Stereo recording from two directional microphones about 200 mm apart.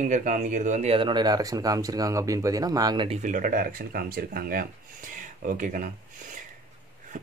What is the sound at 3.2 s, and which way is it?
Speech, 40° right (ahead or behind).